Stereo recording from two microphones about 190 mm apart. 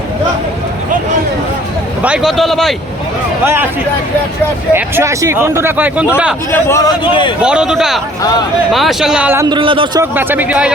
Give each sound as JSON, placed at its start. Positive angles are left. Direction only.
{"t": 2.0, "sound": "speech", "side_deg": -5}
{"t": 3.4, "sound": "speech", "side_deg": -10}
{"t": 4.7, "sound": "speech", "side_deg": -15}
{"t": 6.5, "sound": "a man's voice", "side_deg": 15}
{"t": 7.1, "sound": "speech", "side_deg": 25}
{"t": 7.4, "sound": "speech", "side_deg": -5}
{"t": 9.6, "sound": "a man's voice", "side_deg": -25}
{"t": 10.0, "sound": "speech", "side_deg": -10}